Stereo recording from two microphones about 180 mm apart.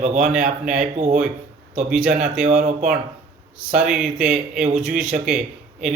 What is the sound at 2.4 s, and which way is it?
Speech, 50° right (ahead or behind).